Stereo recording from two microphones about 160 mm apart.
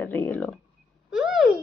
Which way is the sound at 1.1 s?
5° right (ahead or behind).